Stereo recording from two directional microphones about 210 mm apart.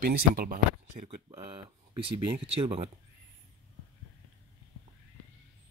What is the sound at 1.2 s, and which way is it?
Speech, 25° right (ahead or behind).